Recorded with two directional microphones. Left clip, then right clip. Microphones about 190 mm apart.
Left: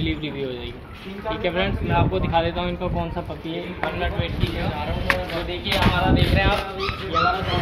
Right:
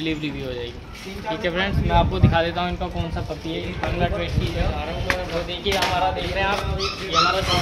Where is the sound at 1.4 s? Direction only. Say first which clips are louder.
Even; 20° right (ahead or behind).